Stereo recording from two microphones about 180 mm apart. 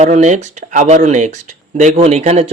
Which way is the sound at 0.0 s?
40° right (ahead or behind).